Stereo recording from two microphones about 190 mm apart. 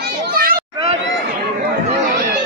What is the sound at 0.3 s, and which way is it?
Children playing, 50° right (ahead or behind).